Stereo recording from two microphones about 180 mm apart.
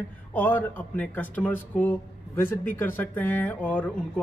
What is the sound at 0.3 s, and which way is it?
A man's voice, 10° left (ahead or behind).